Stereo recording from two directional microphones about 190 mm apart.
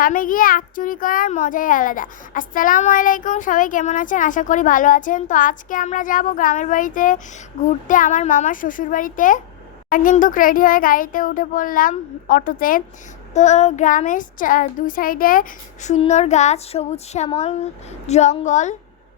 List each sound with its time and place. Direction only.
0.0 s a child's voice: 45° left (ahead or behind)
13.3 s a child's voice: 35° left (ahead or behind)